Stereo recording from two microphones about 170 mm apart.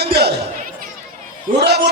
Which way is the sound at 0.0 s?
75° right (ahead or behind).